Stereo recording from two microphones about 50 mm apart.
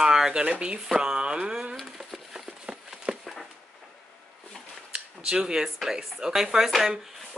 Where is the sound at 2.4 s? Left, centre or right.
Centre.